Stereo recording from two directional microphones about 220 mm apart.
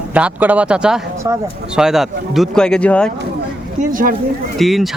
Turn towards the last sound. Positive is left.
turn(degrees=0)  # may be behind; listen again after turning